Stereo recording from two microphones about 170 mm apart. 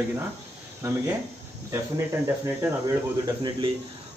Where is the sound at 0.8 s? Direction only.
15° right (ahead or behind).